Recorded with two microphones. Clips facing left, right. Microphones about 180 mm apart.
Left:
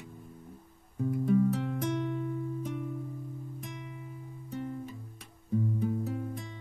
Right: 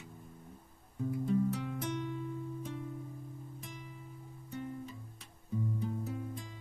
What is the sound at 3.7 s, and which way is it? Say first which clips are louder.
Music: left 5 dB; 65° left (ahead or behind).